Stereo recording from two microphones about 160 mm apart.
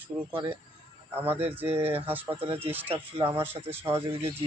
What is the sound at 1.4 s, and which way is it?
Speech, 15° right (ahead or behind).